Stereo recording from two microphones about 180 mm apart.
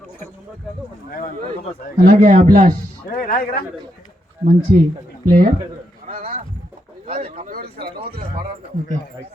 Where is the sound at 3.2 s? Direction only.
50° left (ahead or behind).